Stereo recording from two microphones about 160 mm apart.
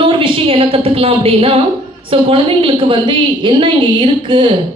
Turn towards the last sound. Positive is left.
turn(degrees=-30)  # may be behind; listen again after turning